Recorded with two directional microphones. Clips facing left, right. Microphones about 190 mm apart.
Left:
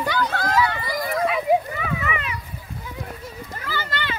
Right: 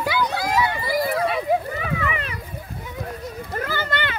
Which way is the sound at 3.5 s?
50° right (ahead or behind).